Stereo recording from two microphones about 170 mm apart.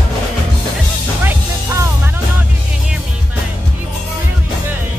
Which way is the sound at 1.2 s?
15° right (ahead or behind).